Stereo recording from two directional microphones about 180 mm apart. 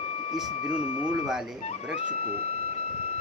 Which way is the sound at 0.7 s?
35° left (ahead or behind).